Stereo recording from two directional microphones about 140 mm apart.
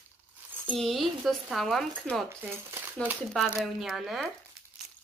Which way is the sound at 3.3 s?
Centre (ahead or behind).